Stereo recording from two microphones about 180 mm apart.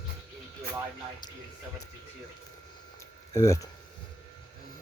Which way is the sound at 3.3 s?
20° left (ahead or behind).